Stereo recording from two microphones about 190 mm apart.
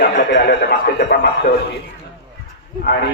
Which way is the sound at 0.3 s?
65° left (ahead or behind).